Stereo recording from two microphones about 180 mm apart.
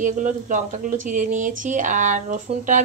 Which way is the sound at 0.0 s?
45° right (ahead or behind).